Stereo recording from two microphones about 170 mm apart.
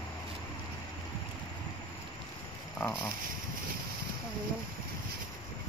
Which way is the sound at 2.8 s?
15° left (ahead or behind).